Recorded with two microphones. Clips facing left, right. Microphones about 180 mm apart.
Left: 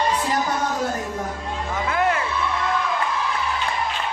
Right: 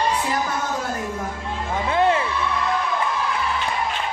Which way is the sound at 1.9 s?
25° right (ahead or behind).